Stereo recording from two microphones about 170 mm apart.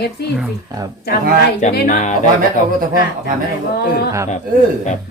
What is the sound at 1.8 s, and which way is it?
Speech, 45° left (ahead or behind).